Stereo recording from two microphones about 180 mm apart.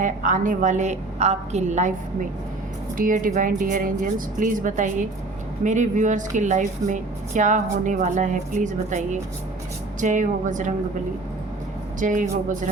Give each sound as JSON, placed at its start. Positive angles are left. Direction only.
{"t": 0.0, "sound": "speech", "side_deg": -45}
{"t": 3.0, "sound": "speech", "side_deg": -50}
{"t": 11.9, "sound": "speech", "side_deg": -45}